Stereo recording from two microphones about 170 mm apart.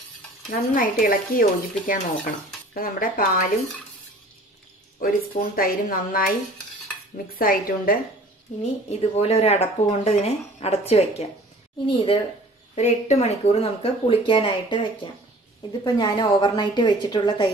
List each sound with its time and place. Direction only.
0.5 s speech: 55° left (ahead or behind)
5.0 s speech: 55° left (ahead or behind)
7.3 s speech: 60° left (ahead or behind)
8.8 s a woman's voice: 40° left (ahead or behind)
12.7 s a woman's voice: 40° left (ahead or behind); by 17.5 s 25° left (ahead or behind)